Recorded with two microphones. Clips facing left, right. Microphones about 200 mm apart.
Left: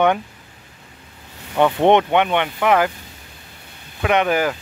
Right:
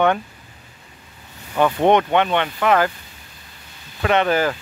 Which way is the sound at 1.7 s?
20° left (ahead or behind).